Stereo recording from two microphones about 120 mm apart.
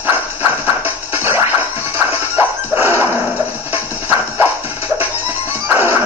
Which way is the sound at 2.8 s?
15° right (ahead or behind).